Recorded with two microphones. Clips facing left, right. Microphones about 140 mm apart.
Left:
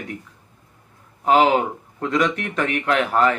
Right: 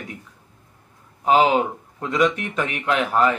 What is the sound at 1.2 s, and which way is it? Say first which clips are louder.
A man's voice: left 1 dB; 15° right (ahead or behind).